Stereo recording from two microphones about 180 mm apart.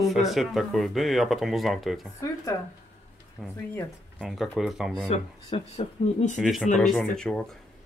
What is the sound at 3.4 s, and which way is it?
Speech, 5° right (ahead or behind).